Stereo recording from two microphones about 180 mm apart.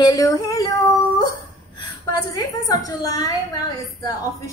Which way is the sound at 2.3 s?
20° left (ahead or behind).